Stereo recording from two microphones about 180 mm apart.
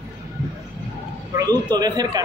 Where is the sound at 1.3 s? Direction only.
20° right (ahead or behind).